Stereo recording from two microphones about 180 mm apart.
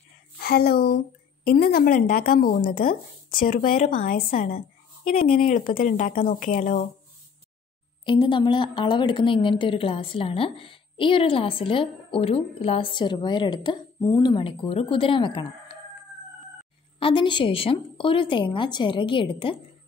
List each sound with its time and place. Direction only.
0.4 s a woman's voice: 55° left (ahead or behind)
8.0 s a woman's voice: 25° left (ahead or behind)
17.0 s a woman's voice: 25° left (ahead or behind)